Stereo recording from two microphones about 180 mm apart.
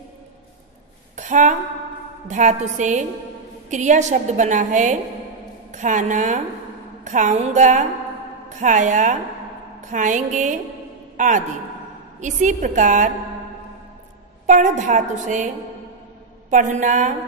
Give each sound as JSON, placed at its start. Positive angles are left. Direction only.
{"t": 1.1, "sound": "a sound", "side_deg": -40}
{"t": 2.2, "sound": "a woman's voice", "side_deg": -40}
{"t": 14.4, "sound": "a woman's voice", "side_deg": -40}